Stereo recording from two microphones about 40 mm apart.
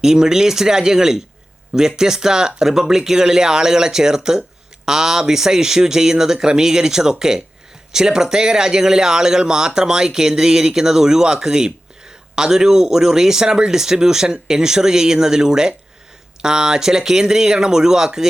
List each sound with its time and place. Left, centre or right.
0.0 s speech: centre